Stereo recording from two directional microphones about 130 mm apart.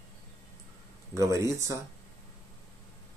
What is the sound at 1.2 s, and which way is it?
Speech, 25° right (ahead or behind).